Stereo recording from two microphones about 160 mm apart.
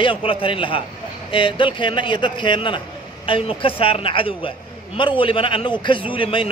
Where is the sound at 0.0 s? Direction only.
35° left (ahead or behind).